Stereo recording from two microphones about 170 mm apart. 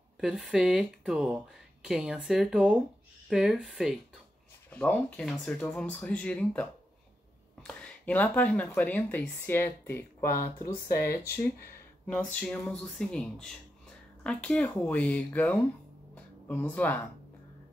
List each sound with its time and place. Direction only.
0.2 s speech: 5° right (ahead or behind); by 10.0 s 15° left (ahead or behind)
10.9 s speech: 65° left (ahead or behind)
12.1 s speech: 5° left (ahead or behind)